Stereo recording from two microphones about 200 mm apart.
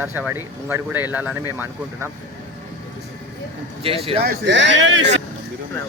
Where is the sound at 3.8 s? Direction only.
30° right (ahead or behind).